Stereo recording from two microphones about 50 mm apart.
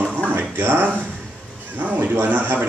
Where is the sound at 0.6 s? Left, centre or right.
Right.